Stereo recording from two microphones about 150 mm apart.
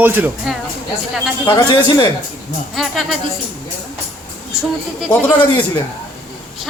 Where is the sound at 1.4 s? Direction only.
25° left (ahead or behind).